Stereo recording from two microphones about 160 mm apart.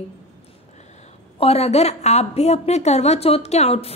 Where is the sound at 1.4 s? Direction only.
40° left (ahead or behind).